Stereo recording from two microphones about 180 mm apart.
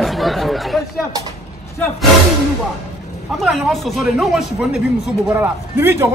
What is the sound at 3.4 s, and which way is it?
Speech, centre (ahead or behind).